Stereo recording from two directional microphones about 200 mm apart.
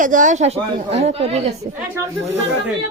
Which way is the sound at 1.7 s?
40° right (ahead or behind).